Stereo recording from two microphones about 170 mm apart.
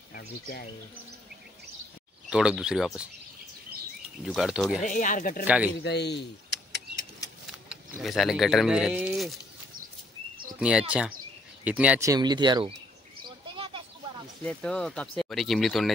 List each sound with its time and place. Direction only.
0.1 s speech: 60° left (ahead or behind)
2.2 s speech: 5° right (ahead or behind)
4.2 s speech: 5° right (ahead or behind)
4.8 s speech: 50° left (ahead or behind)
5.4 s speech: 10° right (ahead or behind)
5.8 s keys jangling: 80° left
7.7 s speech: centre (ahead or behind)
10.6 s speech: 5° right (ahead or behind)
12.0 s speech: 20° right (ahead or behind)
13.5 s a sound: 30° right (ahead or behind)
14.4 s speech: 5° left (ahead or behind)